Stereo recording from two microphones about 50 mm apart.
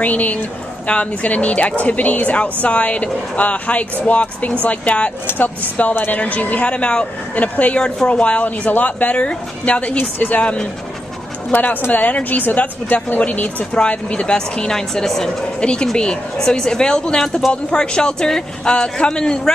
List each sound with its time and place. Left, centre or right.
0.0 s speech: left
9.9 s speech: left
13.7 s speech: left